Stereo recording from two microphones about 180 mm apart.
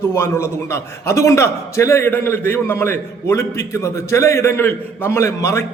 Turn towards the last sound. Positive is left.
turn(degrees=15)  # may be behind; listen again after turning